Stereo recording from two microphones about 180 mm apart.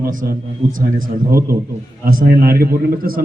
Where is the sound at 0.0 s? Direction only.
50° right (ahead or behind).